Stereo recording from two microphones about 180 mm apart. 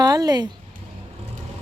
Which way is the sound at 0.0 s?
20° right (ahead or behind).